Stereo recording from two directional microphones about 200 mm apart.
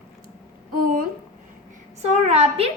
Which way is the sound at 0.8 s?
45° right (ahead or behind).